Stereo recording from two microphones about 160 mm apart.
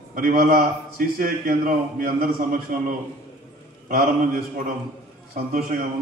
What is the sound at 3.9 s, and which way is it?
A man's voice, 65° right (ahead or behind).